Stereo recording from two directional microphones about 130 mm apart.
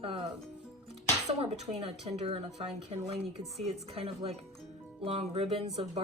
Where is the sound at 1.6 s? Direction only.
55° right (ahead or behind).